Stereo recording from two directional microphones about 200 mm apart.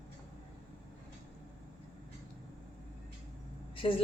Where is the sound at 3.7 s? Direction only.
25° left (ahead or behind).